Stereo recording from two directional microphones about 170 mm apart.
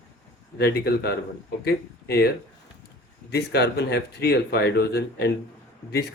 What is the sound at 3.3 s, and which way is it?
Speech, 75° left (ahead or behind).